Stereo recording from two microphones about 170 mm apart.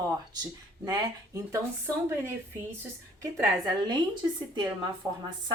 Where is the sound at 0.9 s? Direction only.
20° right (ahead or behind).